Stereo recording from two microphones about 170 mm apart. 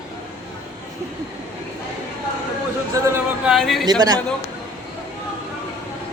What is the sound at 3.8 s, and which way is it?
Speech, 25° right (ahead or behind).